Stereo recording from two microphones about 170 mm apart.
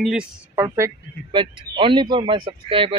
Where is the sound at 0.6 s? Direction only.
20° right (ahead or behind).